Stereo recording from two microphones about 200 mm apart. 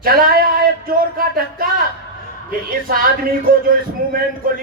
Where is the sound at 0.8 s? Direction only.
45° right (ahead or behind).